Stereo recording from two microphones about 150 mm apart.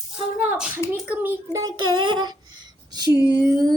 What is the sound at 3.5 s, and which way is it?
Music, 25° right (ahead or behind).